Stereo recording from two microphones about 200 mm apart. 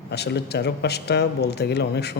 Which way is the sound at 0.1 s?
55° left (ahead or behind).